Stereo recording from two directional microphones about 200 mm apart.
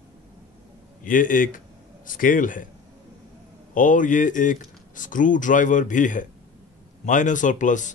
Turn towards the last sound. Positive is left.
turn(degrees=40)  # may be behind; listen again after turning